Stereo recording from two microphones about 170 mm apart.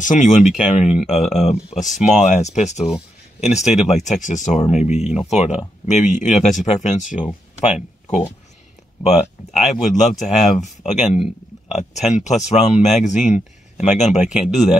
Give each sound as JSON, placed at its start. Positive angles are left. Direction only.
{"t": 0.0, "sound": "speech", "side_deg": 45}
{"t": 3.6, "sound": "speech", "side_deg": -5}
{"t": 3.9, "sound": "speech", "side_deg": 45}